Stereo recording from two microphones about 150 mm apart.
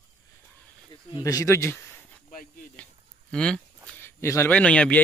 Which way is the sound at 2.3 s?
70° left (ahead or behind).